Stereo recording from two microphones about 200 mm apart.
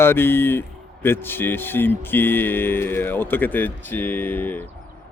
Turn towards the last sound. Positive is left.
turn(degrees=10)  # may be behind; listen again after turning